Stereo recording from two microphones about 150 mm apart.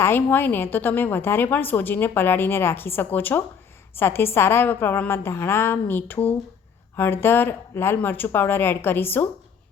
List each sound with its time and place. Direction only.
0.0 s a woman's voice: 15° left (ahead or behind)